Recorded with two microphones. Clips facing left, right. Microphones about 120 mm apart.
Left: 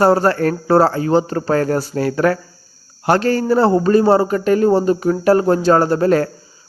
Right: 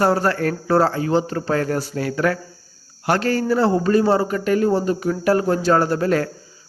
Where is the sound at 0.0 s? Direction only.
35° left (ahead or behind).